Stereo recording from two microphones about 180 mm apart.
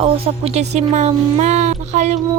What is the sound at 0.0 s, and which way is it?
Speech, 35° right (ahead or behind).